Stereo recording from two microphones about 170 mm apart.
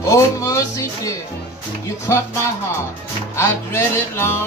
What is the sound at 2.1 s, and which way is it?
Music, 15° left (ahead or behind).